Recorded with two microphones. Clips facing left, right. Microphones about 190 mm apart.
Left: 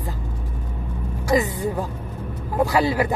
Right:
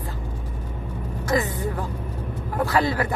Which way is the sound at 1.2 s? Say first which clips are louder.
Left 3 dB; 15° left (ahead or behind).